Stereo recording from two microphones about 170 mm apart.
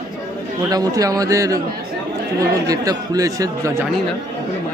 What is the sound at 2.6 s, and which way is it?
A man's voice, 20° right (ahead or behind).